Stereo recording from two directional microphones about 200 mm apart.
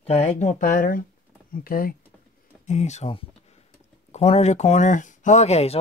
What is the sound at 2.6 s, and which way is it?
Speech, 35° left (ahead or behind).